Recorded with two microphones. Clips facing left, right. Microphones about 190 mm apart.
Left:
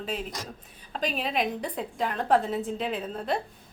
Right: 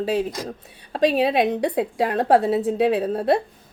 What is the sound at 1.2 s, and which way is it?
A woman's voice, 75° right (ahead or behind).